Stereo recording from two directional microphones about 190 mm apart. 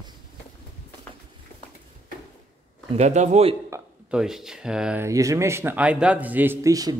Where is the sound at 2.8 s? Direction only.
35° right (ahead or behind).